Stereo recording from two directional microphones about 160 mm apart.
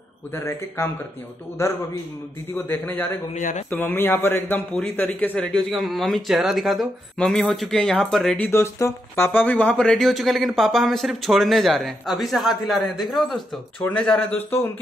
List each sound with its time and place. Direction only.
0.3 s a man's voice: 15° left (ahead or behind)
3.3 s speech: 50° left (ahead or behind)
3.7 s a man's voice: 15° left (ahead or behind)